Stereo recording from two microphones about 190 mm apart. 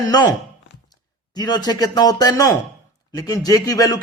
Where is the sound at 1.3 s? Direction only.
20° left (ahead or behind).